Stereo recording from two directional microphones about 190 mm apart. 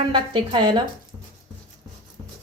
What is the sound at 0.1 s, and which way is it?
Speech, 20° right (ahead or behind).